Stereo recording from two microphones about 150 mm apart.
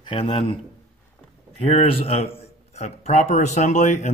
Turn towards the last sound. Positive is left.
turn(degrees=55)  # may be behind; listen again after turning